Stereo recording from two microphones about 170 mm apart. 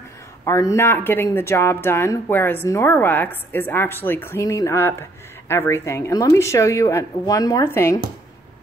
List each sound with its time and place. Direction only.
0.5 s speech: 15° left (ahead or behind)